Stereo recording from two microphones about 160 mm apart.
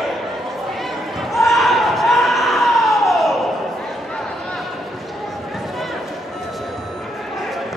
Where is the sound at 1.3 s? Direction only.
Centre (ahead or behind).